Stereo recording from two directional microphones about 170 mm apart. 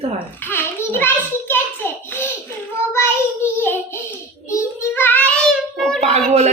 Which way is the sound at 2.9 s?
15° left (ahead or behind).